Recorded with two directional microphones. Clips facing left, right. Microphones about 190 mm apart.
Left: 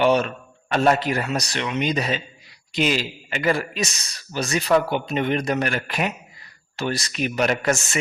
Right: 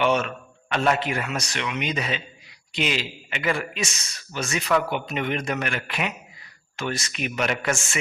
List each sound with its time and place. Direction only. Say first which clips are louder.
0.0 s a man's voice: left 4 dB; 35° left (ahead or behind)